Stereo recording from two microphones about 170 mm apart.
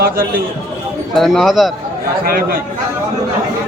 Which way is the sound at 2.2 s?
60° right (ahead or behind).